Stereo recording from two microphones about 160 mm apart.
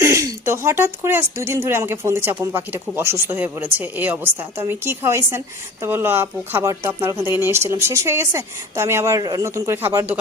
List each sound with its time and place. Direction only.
0.0 s speech: 20° right (ahead or behind)